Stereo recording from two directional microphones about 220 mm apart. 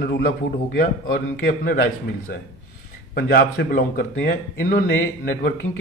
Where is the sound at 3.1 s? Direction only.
45° left (ahead or behind).